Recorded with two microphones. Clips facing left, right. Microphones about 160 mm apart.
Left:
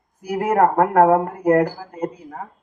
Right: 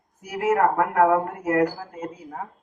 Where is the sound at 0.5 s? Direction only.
40° left (ahead or behind).